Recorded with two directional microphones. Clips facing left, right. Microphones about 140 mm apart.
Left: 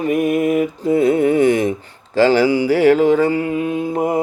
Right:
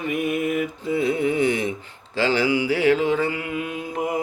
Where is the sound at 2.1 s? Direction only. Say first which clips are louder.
Left 8 dB; 45° left (ahead or behind).